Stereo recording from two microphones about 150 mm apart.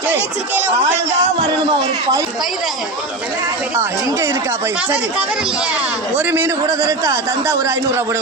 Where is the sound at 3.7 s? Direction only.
20° right (ahead or behind).